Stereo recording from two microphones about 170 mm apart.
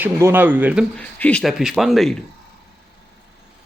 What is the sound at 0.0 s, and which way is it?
Speech, 15° right (ahead or behind).